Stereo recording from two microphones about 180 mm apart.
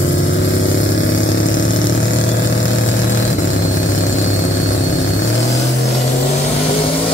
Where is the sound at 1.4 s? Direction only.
90° left.